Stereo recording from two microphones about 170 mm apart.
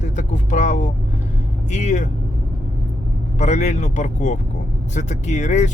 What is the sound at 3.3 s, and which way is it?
Speech, 45° left (ahead or behind).